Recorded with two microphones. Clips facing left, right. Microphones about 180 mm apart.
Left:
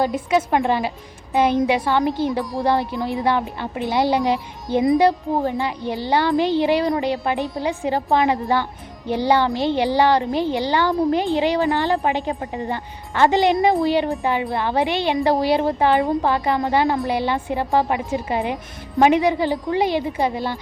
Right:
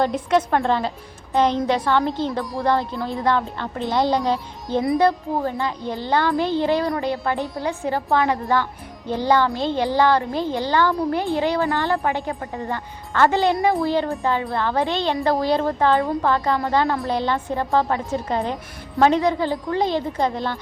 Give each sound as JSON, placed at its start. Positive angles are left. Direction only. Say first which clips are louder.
{"t": 0.0, "sound": "a woman's voice", "louder": "even", "side_deg": 5}